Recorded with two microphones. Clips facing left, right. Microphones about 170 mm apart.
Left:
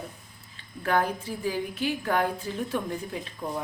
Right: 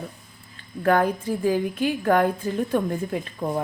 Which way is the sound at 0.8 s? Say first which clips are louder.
Right 6 dB; 50° right (ahead or behind).